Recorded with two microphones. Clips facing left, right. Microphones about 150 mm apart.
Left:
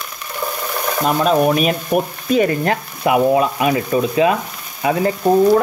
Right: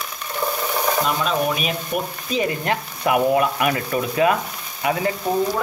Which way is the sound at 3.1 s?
25° left (ahead or behind).